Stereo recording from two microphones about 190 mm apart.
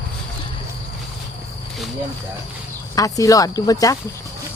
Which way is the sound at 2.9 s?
15° left (ahead or behind).